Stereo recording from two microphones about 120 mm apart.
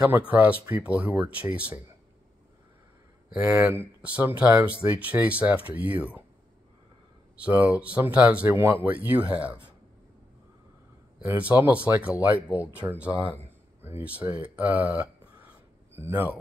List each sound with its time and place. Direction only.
0.3 s speech: 10° right (ahead or behind)
3.3 s speech: 15° right (ahead or behind)
7.4 s speech: 15° right (ahead or behind)
11.2 s speech: 15° right (ahead or behind)